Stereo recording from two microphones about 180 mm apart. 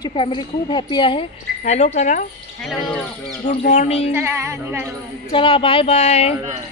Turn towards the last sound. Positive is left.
turn(degrees=35)  # may be behind; listen again after turning